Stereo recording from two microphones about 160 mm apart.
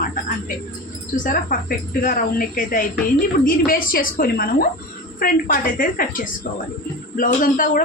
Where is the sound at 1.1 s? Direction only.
60° left (ahead or behind).